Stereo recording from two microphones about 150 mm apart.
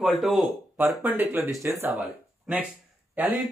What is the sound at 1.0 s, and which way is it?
A man's voice, 10° right (ahead or behind).